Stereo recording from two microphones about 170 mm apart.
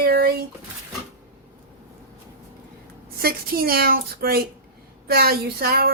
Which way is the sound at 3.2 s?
65° right (ahead or behind).